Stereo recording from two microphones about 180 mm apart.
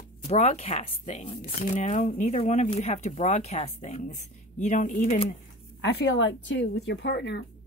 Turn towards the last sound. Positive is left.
turn(degrees=75)  # may be behind; listen again after turning